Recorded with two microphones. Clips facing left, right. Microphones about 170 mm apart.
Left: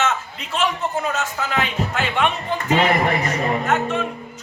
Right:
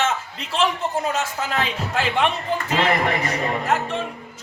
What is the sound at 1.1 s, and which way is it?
Speech, 30° right (ahead or behind).